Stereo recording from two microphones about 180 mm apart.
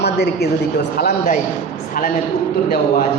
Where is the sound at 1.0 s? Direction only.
55° left (ahead or behind).